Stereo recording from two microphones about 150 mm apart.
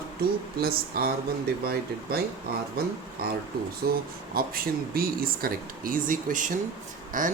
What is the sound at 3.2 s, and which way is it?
Speech, 90° right.